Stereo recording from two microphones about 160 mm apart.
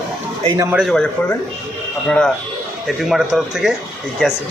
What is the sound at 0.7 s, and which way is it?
A man's voice, centre (ahead or behind).